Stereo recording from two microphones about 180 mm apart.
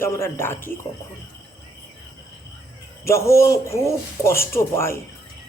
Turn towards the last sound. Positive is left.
turn(degrees=15)  # may be behind; listen again after turning